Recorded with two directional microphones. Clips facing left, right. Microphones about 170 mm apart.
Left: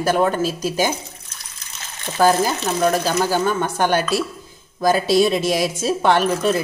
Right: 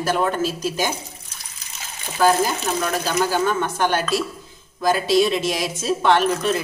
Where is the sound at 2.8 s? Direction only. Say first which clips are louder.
Left 5 dB; 45° left (ahead or behind).